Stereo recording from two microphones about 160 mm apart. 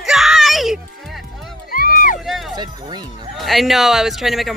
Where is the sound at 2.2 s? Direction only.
Centre (ahead or behind).